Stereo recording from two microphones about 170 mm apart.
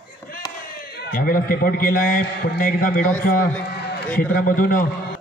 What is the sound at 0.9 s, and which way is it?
A man's voice, 60° left (ahead or behind).